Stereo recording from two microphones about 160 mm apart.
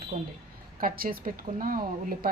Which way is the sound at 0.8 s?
65° right (ahead or behind).